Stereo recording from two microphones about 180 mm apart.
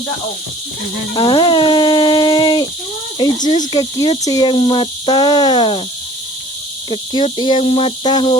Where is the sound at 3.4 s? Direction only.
45° left (ahead or behind).